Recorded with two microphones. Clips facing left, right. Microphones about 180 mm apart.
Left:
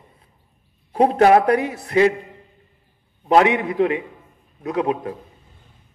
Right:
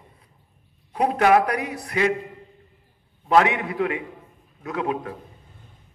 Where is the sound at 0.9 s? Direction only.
30° left (ahead or behind).